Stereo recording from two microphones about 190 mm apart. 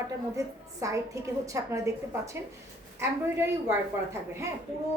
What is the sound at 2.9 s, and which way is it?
Speech, 10° right (ahead or behind).